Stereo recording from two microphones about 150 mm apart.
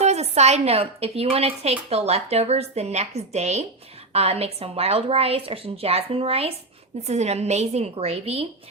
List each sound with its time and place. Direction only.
0.0 s a woman's voice: 45° right (ahead or behind)